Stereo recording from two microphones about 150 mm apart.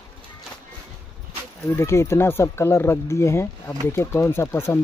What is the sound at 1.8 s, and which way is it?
Speech, 15° left (ahead or behind).